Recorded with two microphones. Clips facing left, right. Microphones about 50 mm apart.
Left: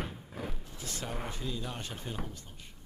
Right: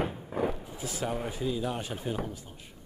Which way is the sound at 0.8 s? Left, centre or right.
Centre.